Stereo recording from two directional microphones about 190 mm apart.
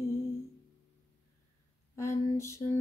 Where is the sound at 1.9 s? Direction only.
15° left (ahead or behind).